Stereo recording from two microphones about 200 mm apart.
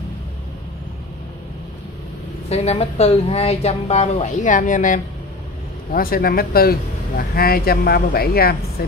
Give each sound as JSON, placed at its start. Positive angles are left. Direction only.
{"t": 2.5, "sound": "speech", "side_deg": 30}